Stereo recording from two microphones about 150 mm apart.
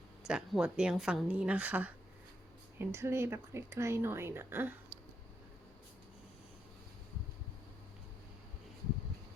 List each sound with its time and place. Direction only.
0.3 s speech: 5° right (ahead or behind)